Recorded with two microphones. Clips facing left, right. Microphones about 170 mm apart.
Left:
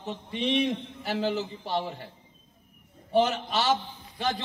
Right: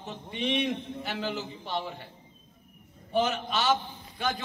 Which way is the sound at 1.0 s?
35° left (ahead or behind).